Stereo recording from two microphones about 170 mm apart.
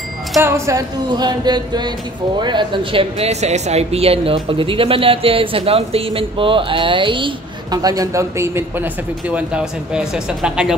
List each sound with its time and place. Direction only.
0.4 s speech: 15° right (ahead or behind)